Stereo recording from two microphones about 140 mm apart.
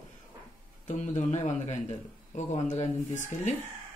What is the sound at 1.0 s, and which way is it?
A man's voice, 60° left (ahead or behind).